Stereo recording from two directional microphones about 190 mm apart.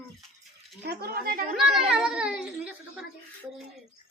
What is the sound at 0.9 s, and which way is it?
Speech, 50° right (ahead or behind).